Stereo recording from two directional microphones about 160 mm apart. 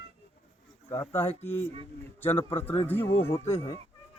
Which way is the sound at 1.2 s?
15° left (ahead or behind).